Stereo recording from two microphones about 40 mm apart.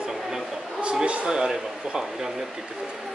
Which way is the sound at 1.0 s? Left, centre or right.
Right.